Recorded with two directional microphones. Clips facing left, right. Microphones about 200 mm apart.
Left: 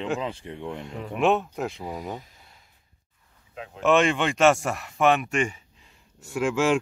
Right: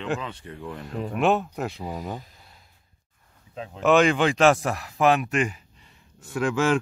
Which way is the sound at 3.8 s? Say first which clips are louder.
Right 2 dB; centre (ahead or behind).